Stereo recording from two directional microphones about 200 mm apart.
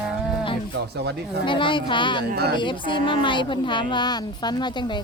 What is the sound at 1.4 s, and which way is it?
Speech, 25° left (ahead or behind).